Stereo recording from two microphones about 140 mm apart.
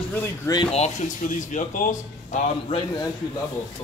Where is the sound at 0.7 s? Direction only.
55° left (ahead or behind); by 2.4 s 70° left (ahead or behind).